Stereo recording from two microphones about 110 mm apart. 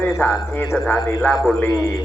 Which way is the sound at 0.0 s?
15° left (ahead or behind).